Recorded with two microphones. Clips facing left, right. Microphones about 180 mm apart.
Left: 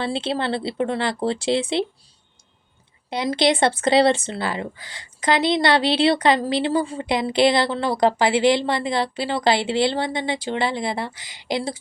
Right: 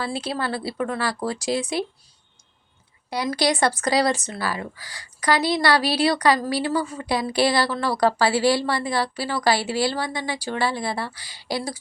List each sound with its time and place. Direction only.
0.0 s speech: 25° left (ahead or behind)
3.1 s speech: 25° left (ahead or behind)